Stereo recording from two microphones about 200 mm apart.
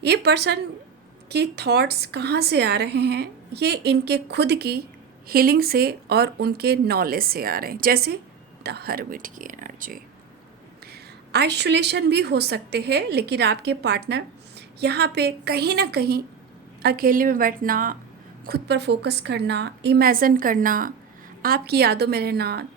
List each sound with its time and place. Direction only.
0.0 s a woman's voice: 55° right (ahead or behind)
11.3 s a woman's voice: 55° right (ahead or behind)
18.4 s a woman's voice: 55° right (ahead or behind)